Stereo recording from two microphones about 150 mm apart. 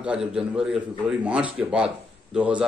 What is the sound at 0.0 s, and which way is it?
A man's voice, 5° right (ahead or behind).